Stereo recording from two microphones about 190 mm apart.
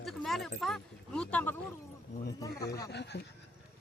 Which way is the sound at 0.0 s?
Centre (ahead or behind).